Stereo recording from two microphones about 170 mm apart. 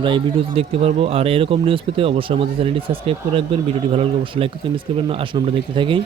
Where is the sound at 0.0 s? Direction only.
30° right (ahead or behind).